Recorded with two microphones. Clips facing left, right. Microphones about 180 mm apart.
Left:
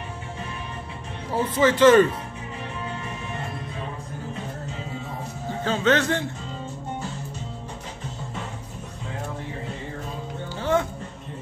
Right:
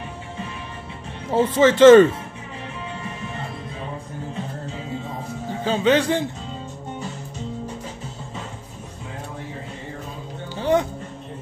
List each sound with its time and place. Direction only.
1.3 s speech: 25° right (ahead or behind)
5.6 s a man's voice: 10° right (ahead or behind)
10.5 s music: 15° right (ahead or behind)